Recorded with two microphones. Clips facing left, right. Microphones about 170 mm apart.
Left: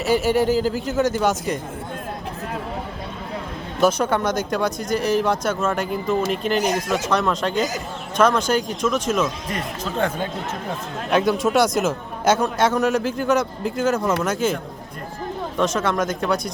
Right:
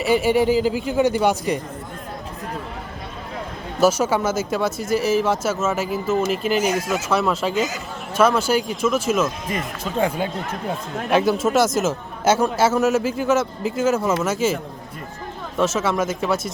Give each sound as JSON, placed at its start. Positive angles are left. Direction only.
{"t": 0.1, "sound": "speech", "side_deg": -10}
{"t": 0.3, "sound": "speech", "side_deg": 45}
{"t": 0.9, "sound": "speech", "side_deg": -15}
{"t": 3.8, "sound": "a man's voice", "side_deg": -5}
{"t": 11.1, "sound": "a man's voice", "side_deg": -5}